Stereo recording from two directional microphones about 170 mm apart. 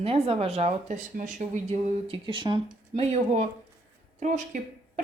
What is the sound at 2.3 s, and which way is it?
Speech, 30° right (ahead or behind).